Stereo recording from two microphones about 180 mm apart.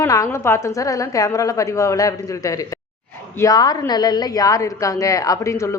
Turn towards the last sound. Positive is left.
turn(degrees=15)  # may be behind; listen again after turning